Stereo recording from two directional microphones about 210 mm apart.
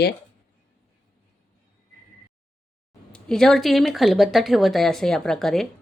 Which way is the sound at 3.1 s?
5° left (ahead or behind).